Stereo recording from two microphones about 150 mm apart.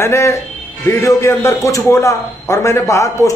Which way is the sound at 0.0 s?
20° left (ahead or behind).